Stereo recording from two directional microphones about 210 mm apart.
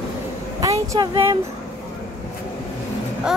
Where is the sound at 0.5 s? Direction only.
15° right (ahead or behind).